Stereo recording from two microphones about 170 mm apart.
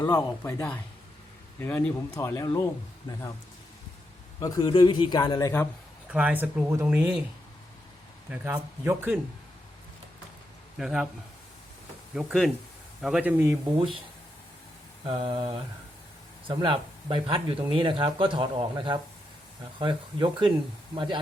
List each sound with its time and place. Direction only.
0.0 s a man's voice: 20° left (ahead or behind)
4.4 s a man's voice: 20° left (ahead or behind)
6.1 s speech: 10° right (ahead or behind)
8.3 s speech: 10° right (ahead or behind)
10.8 s a man's voice: centre (ahead or behind)
12.1 s a man's voice: centre (ahead or behind)
13.7 s mantra: 30° right (ahead or behind)
15.0 s mantra: 35° right (ahead or behind)
16.5 s speech: 30° right (ahead or behind)